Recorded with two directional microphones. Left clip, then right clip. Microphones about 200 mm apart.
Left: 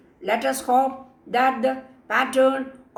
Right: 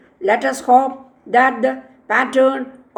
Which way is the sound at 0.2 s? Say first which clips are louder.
Right 6 dB; 40° right (ahead or behind).